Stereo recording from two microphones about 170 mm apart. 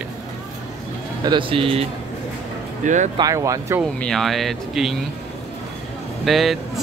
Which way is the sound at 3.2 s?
20° right (ahead or behind).